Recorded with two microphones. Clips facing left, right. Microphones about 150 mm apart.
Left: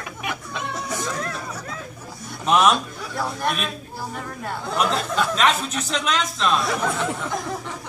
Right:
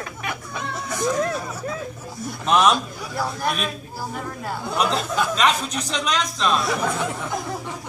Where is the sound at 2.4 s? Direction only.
Centre (ahead or behind).